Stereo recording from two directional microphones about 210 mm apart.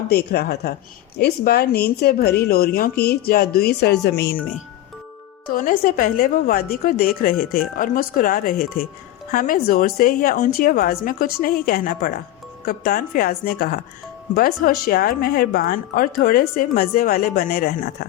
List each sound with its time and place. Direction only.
0.1 s speech: 50° left (ahead or behind)
5.5 s speech: 40° left (ahead or behind)